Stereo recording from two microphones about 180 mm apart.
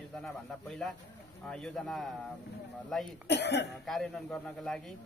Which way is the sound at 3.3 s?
70° left (ahead or behind).